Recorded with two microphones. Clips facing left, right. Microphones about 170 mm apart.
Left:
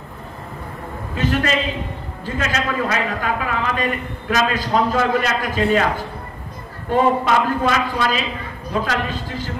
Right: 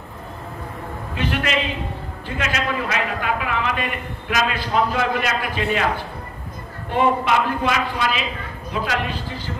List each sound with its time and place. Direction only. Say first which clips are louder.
1.1 s a man's voice: left 3 dB; 40° left (ahead or behind)
6.9 s a man's voice: left 2 dB; 40° left (ahead or behind)